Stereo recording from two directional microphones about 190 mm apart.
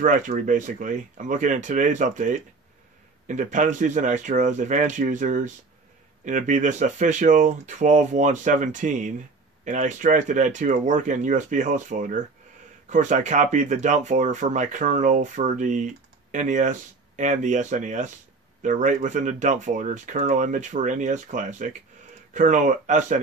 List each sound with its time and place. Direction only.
0.0 s speech: 40° right (ahead or behind)